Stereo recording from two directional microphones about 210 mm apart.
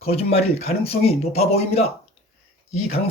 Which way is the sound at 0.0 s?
30° left (ahead or behind).